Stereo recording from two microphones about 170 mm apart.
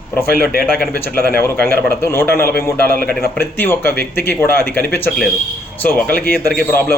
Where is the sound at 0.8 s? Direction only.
10° left (ahead or behind).